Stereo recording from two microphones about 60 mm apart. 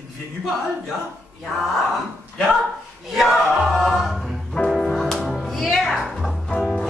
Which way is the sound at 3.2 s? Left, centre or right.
Centre.